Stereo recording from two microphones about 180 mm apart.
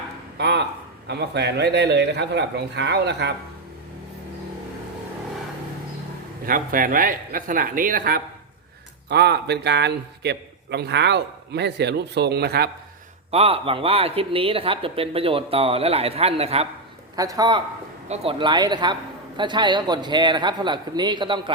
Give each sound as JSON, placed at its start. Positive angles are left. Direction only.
{"t": 0.3, "sound": "a sound", "side_deg": -70}
{"t": 1.0, "sound": "a man's voice", "side_deg": -70}
{"t": 6.4, "sound": "a man's voice", "side_deg": -50}
{"t": 9.0, "sound": "a man's voice", "side_deg": -65}
{"t": 13.3, "sound": "speech", "side_deg": -30}
{"t": 17.2, "sound": "a man's voice", "side_deg": -20}
{"t": 18.1, "sound": "a man's voice", "side_deg": -30}